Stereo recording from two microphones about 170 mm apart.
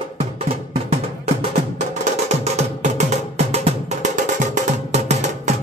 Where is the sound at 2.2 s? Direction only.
40° right (ahead or behind).